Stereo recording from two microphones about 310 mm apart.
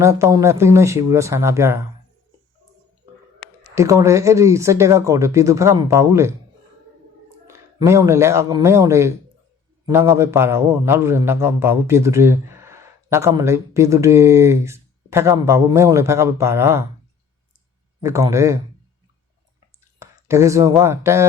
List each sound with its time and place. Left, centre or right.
0.0 s a man's voice: centre
3.8 s a man's voice: centre
7.4 s a man's voice: centre
18.0 s a man's voice: centre
20.0 s speech: centre